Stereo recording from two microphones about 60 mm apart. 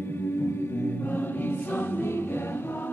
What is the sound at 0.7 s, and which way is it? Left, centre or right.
Choir, left.